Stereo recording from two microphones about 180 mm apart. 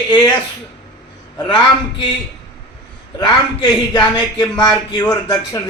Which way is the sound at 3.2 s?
25° left (ahead or behind).